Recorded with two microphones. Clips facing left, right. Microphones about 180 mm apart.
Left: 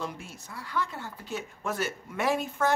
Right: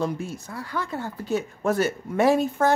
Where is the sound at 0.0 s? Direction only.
40° right (ahead or behind).